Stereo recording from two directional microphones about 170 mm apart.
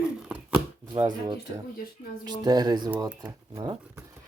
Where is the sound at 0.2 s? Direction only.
5° right (ahead or behind).